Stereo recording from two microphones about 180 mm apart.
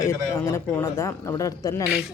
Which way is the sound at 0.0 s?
15° left (ahead or behind).